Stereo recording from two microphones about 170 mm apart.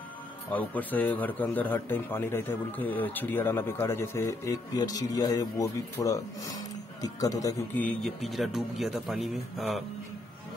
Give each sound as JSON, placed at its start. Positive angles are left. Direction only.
{"t": 0.5, "sound": "speech", "side_deg": 10}
{"t": 7.8, "sound": "a man's voice", "side_deg": 0}